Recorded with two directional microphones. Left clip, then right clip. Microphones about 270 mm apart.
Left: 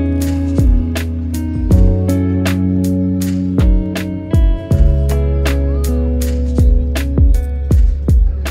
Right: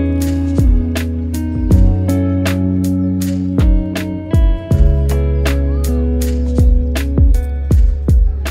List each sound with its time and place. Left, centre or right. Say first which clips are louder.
0.0 s music: even; centre